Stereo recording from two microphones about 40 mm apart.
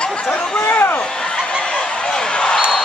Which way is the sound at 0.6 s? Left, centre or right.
Left.